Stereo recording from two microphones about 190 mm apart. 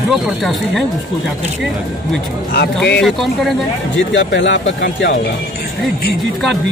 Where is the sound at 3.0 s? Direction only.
Centre (ahead or behind).